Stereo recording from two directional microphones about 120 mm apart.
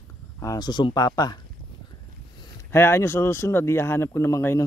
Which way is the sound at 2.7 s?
20° left (ahead or behind).